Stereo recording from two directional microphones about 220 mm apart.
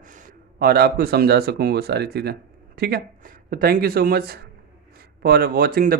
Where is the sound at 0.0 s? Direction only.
35° right (ahead or behind).